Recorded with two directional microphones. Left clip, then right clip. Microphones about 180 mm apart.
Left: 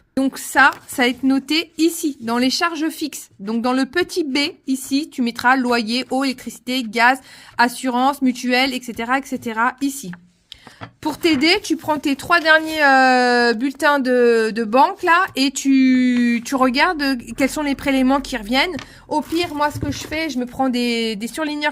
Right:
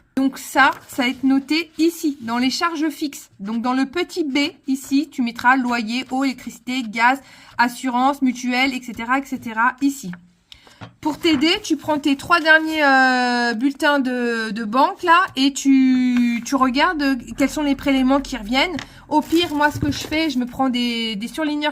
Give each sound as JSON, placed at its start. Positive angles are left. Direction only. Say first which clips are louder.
{"t": 0.2, "sound": "a woman's voice", "louder": "left 2 dB", "side_deg": 45}
{"t": 19.1, "sound": "speech", "louder": "right 3 dB", "side_deg": 30}